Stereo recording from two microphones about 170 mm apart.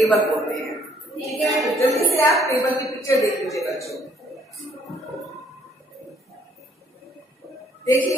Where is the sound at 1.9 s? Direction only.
20° left (ahead or behind).